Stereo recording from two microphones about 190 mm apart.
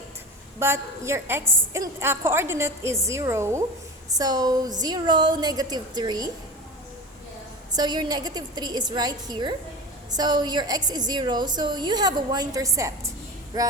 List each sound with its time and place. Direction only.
0.6 s a woman's voice: 15° right (ahead or behind)
7.8 s a woman's voice: 20° right (ahead or behind)